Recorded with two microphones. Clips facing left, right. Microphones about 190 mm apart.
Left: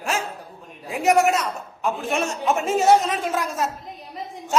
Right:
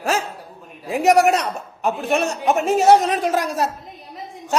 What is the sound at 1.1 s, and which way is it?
A man's voice, 35° right (ahead or behind).